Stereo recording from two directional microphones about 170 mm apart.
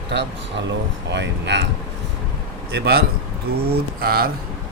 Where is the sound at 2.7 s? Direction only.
70° right (ahead or behind).